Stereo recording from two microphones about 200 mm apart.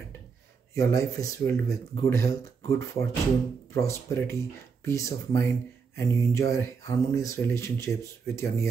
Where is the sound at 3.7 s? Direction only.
15° left (ahead or behind).